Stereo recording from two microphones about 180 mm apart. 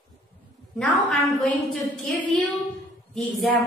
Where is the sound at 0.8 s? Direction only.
Centre (ahead or behind).